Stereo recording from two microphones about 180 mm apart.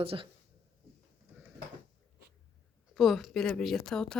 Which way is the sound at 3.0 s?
Centre (ahead or behind).